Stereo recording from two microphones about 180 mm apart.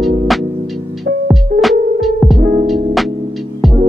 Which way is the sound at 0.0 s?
Centre (ahead or behind).